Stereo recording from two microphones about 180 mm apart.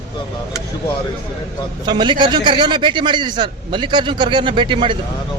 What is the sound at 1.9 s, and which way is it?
A man's voice, 25° right (ahead or behind).